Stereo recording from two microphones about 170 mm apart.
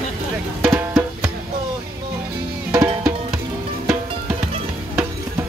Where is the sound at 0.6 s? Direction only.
15° right (ahead or behind).